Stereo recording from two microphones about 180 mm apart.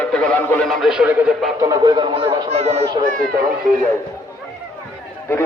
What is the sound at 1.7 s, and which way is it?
Speech, 25° right (ahead or behind).